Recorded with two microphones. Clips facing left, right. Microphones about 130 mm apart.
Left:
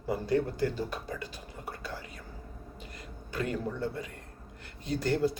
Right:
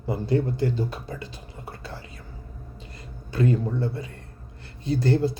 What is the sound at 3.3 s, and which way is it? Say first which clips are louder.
A man's voice: right 9 dB; 30° right (ahead or behind).